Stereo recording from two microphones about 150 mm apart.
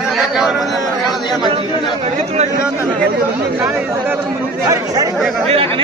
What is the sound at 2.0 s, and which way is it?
Speech, 45° right (ahead or behind).